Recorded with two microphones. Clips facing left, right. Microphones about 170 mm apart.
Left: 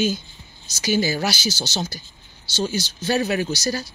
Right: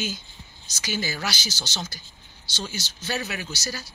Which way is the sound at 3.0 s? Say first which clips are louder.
Left 10 dB; 35° left (ahead or behind).